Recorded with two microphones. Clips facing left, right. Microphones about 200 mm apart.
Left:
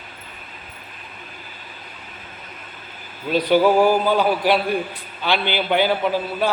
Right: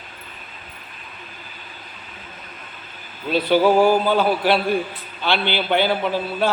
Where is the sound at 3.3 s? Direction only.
15° left (ahead or behind).